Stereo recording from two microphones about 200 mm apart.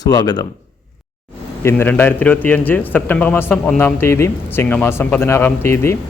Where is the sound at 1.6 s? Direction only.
10° left (ahead or behind).